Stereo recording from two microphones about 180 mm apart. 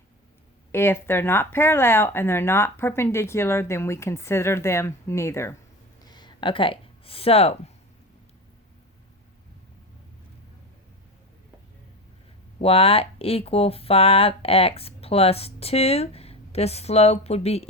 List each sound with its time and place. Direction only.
0.7 s speech: 15° left (ahead or behind)
6.0 s a sound: 25° left (ahead or behind)
12.5 s speech: 35° left (ahead or behind)